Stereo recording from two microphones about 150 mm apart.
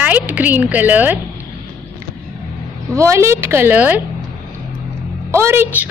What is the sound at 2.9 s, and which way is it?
A woman's voice, 20° right (ahead or behind).